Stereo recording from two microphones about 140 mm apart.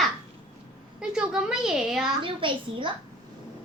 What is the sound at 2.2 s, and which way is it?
Speech, 35° right (ahead or behind).